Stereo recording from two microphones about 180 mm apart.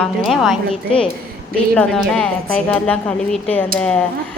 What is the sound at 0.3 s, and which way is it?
A woman's voice, centre (ahead or behind).